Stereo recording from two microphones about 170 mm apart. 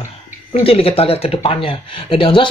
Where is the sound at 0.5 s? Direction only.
35° left (ahead or behind).